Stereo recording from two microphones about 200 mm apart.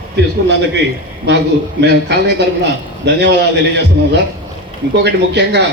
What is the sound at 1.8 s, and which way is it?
A man's voice, 55° right (ahead or behind).